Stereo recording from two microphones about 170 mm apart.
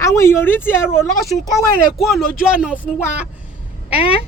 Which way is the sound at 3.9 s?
35° left (ahead or behind).